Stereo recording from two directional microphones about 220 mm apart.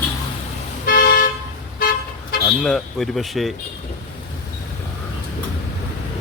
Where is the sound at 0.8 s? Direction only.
40° left (ahead or behind).